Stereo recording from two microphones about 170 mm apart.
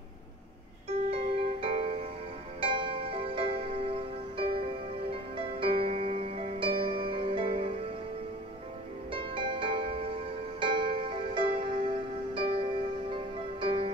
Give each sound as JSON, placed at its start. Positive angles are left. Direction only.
{"t": 0.8, "sound": "music", "side_deg": -35}
{"t": 9.1, "sound": "music", "side_deg": -30}